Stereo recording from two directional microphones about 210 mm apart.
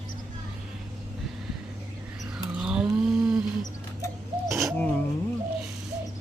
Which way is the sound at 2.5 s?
5° right (ahead or behind).